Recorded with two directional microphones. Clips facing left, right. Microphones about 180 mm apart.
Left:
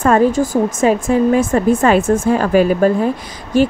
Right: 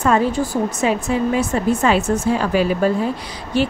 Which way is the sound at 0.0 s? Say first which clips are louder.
Left 5 dB; 50° left (ahead or behind).